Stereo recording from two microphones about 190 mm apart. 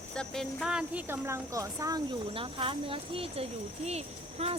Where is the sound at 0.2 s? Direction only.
Centre (ahead or behind).